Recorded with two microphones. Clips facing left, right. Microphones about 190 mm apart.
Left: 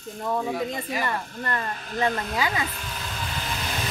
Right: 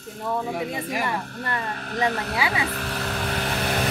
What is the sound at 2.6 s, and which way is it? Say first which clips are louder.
Vehicle: right 4 dB; 70° right (ahead or behind).